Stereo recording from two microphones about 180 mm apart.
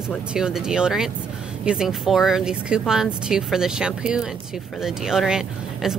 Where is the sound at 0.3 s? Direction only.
5° right (ahead or behind).